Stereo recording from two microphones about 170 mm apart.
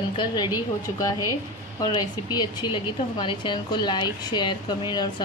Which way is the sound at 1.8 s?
25° left (ahead or behind).